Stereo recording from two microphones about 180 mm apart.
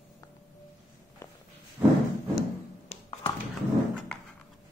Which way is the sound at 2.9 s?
30° left (ahead or behind).